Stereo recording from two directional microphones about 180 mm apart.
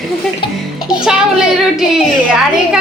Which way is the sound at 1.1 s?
5° right (ahead or behind).